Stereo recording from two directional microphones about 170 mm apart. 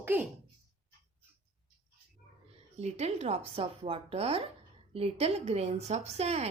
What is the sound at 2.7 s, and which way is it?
A woman's voice, 40° right (ahead or behind).